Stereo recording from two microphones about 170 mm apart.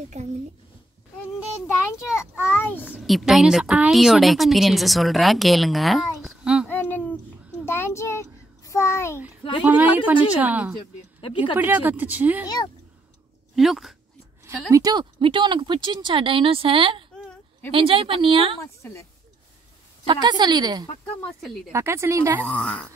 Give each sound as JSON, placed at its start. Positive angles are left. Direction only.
{"t": 0.2, "sound": "speech", "side_deg": -45}
{"t": 2.1, "sound": "a child's voice", "side_deg": 10}
{"t": 2.9, "sound": "speech", "side_deg": 0}
{"t": 6.7, "sound": "a sound", "side_deg": 10}
{"t": 9.7, "sound": "speech", "side_deg": -10}
{"t": 11.1, "sound": "speech", "side_deg": 30}
{"t": 11.5, "sound": "speech", "side_deg": -10}
{"t": 12.4, "sound": "speech", "side_deg": 25}
{"t": 13.6, "sound": "speech", "side_deg": 0}
{"t": 14.7, "sound": "a woman's voice", "side_deg": -20}
{"t": 18.8, "sound": "speech", "side_deg": 15}
{"t": 20.1, "sound": "speech", "side_deg": -25}
{"t": 22.5, "sound": "a child's voice", "side_deg": 5}